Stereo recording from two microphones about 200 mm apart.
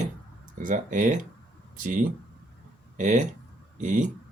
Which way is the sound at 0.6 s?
40° right (ahead or behind).